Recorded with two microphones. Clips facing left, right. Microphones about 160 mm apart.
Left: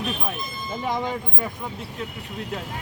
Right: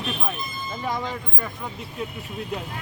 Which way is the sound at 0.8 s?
20° left (ahead or behind).